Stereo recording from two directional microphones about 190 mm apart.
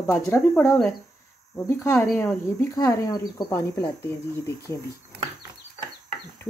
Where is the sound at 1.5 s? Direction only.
15° left (ahead or behind).